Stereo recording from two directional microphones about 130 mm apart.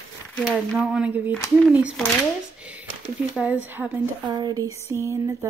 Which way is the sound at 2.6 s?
10° right (ahead or behind).